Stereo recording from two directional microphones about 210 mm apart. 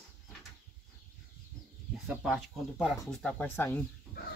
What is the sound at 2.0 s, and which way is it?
Speech, 5° right (ahead or behind).